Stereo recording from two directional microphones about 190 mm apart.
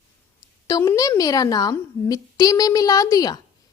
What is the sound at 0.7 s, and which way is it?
A woman's voice, 20° left (ahead or behind).